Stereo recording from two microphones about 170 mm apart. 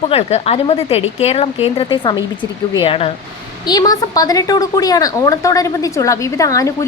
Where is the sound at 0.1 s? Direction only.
40° left (ahead or behind).